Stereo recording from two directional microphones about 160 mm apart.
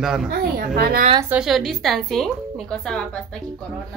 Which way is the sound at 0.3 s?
65° right (ahead or behind).